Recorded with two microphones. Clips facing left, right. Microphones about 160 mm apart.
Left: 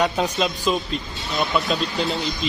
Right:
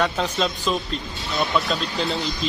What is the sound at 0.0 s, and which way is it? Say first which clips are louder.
Speech: left 1 dB; 15° left (ahead or behind).